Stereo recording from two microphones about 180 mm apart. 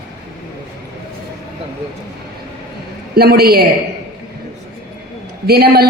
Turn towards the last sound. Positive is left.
turn(degrees=-60)  # may be behind; listen again after turning